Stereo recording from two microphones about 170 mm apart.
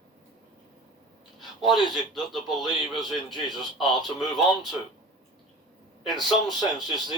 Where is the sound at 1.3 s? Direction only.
Centre (ahead or behind).